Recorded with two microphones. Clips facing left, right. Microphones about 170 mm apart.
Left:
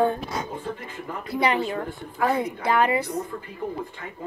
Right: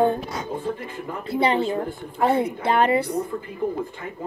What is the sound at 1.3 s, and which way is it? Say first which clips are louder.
A woman's voice: right 3 dB; 25° right (ahead or behind).